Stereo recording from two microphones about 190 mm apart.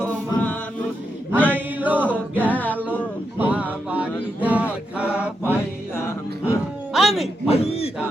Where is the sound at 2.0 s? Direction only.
10° left (ahead or behind).